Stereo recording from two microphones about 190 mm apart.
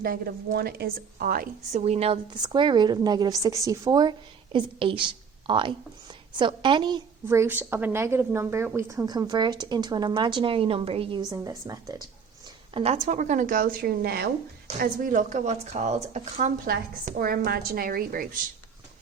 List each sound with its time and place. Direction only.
0.0 s a woman's voice: 50° right (ahead or behind)
1.8 s a woman's voice: 35° right (ahead or behind)
7.3 s a woman's voice: 10° right (ahead or behind); by 11.2 s 30° right (ahead or behind)
11.3 s speech: 20° right (ahead or behind)
12.7 s a woman's voice: 35° right (ahead or behind)
17.1 s a woman's voice: 50° right (ahead or behind)